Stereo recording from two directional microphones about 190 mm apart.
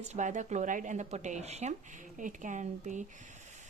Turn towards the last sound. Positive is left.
turn(degrees=-40)  # may be behind; listen again after turning